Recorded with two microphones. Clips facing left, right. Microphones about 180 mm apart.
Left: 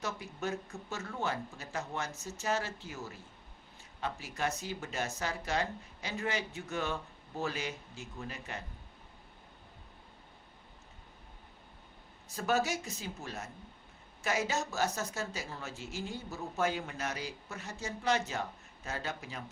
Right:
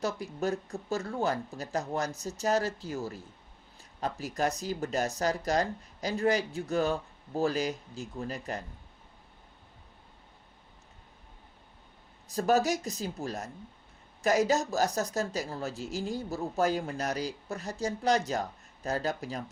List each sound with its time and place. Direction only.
0.0 s speech: 35° right (ahead or behind)
12.3 s speech: 35° right (ahead or behind)